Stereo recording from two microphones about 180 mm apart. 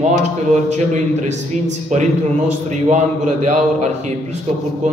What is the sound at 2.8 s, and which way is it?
A man's voice, 40° right (ahead or behind).